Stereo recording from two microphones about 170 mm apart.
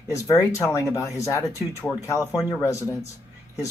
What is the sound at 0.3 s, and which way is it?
Speech, 20° left (ahead or behind).